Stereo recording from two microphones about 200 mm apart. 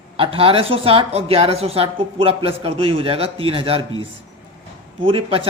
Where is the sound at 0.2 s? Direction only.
25° right (ahead or behind).